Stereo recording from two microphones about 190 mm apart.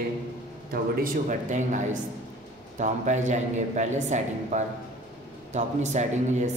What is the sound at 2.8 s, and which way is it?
Speech, 40° right (ahead or behind).